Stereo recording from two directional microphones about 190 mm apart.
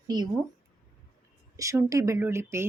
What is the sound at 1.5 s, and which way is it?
A woman's voice, 15° right (ahead or behind).